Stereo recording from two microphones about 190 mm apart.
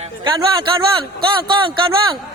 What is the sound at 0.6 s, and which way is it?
Speech, 25° right (ahead or behind).